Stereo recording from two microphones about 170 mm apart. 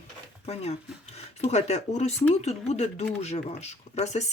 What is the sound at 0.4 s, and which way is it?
Speech, 35° left (ahead or behind).